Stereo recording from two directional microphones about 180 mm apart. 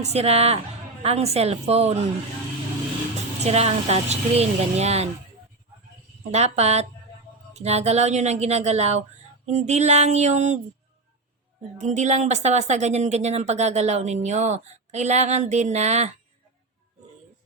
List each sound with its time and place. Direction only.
0.0 s a woman's voice: 35° right (ahead or behind)
3.4 s a woman's voice: 35° right (ahead or behind)
6.3 s a woman's voice: 35° right (ahead or behind)
11.8 s a woman's voice: 40° right (ahead or behind)